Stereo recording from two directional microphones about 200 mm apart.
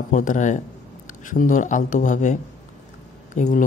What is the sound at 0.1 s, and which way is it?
Speech, 40° left (ahead or behind).